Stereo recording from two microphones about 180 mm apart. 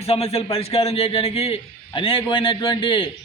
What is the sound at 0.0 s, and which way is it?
A man's voice, 35° left (ahead or behind).